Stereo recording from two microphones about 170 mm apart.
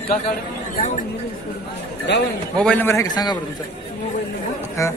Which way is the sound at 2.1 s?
90° left.